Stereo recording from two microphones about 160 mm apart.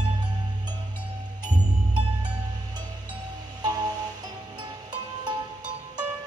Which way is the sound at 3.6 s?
25° right (ahead or behind).